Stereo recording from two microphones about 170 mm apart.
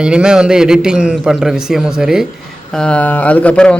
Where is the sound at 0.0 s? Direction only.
5° right (ahead or behind).